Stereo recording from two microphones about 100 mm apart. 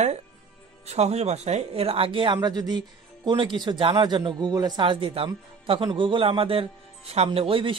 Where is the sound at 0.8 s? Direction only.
90° right; by 4.5 s 50° right (ahead or behind).